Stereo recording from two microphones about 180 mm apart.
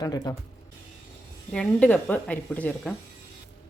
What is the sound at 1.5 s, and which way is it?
A woman's voice, 5° left (ahead or behind).